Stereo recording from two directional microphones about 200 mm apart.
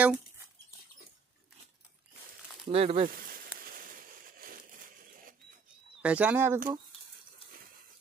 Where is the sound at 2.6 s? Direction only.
30° right (ahead or behind).